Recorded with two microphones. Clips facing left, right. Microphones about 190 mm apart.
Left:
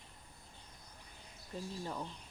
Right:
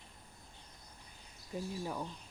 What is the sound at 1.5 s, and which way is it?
Speech, 10° right (ahead or behind).